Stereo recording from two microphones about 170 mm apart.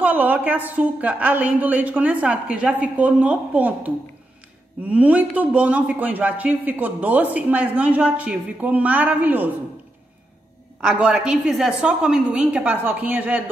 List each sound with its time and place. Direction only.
0.0 s a man's voice: 10° right (ahead or behind)
10.8 s a woman's voice: 5° right (ahead or behind)